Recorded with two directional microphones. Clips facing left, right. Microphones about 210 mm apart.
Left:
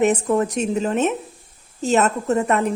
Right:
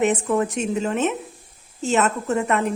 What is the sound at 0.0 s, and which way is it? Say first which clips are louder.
A woman's voice: left 2 dB; 40° left (ahead or behind).